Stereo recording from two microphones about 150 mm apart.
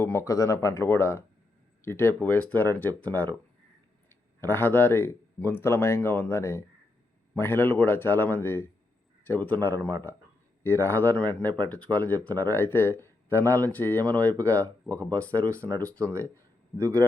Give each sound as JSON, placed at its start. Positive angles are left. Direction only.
{"t": 0.0, "sound": "speech", "side_deg": 15}
{"t": 4.4, "sound": "speech", "side_deg": 15}
{"t": 16.7, "sound": "speech", "side_deg": -20}